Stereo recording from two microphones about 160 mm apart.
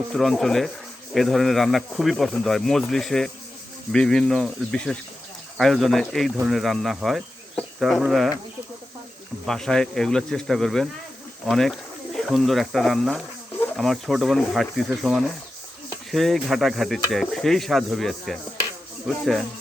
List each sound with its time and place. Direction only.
0.1 s speech: centre (ahead or behind)
9.5 s speech: 5° left (ahead or behind)